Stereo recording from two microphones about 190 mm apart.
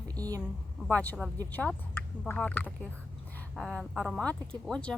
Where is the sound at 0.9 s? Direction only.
10° left (ahead or behind).